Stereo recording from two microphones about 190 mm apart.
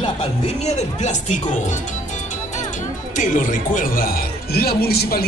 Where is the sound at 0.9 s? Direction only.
35° left (ahead or behind).